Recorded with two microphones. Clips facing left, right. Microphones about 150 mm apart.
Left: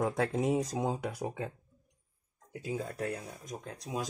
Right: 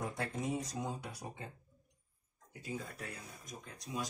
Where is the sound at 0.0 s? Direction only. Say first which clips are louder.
Left 9 dB; 90° left.